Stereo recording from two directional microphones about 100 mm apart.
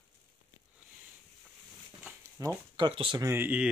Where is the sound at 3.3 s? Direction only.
20° right (ahead or behind).